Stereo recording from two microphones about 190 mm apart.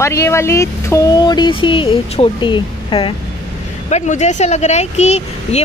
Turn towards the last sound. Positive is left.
turn(degrees=35)  # may be behind; listen again after turning